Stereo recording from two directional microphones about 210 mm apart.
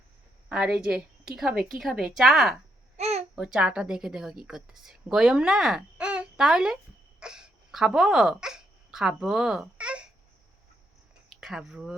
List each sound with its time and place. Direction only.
0.4 s a woman's voice: 5° right (ahead or behind)
3.0 s babbling: 30° right (ahead or behind)
3.3 s a woman's voice: 5° right (ahead or behind)
7.2 s a sound: 5° right (ahead or behind)
11.3 s speech: centre (ahead or behind)